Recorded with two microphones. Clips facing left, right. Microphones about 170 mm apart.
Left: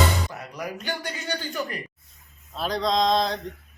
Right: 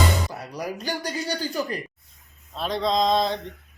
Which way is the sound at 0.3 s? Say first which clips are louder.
Right 2 dB; 35° right (ahead or behind).